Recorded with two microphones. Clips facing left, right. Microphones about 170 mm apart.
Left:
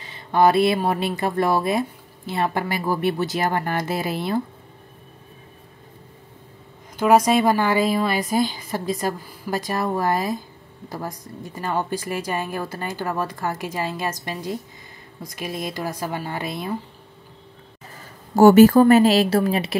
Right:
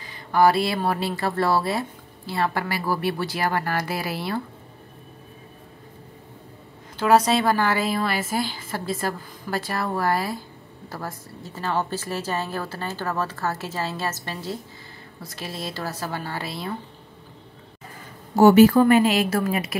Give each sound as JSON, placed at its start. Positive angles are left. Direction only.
{"t": 0.0, "sound": "speech", "side_deg": 25}
{"t": 7.0, "sound": "a woman's voice", "side_deg": 15}
{"t": 18.3, "sound": "a woman's voice", "side_deg": 45}